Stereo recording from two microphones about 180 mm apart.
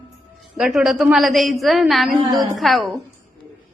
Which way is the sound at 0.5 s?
Centre (ahead or behind).